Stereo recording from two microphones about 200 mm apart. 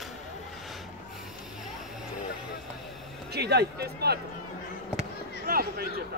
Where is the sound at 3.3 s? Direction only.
55° right (ahead or behind).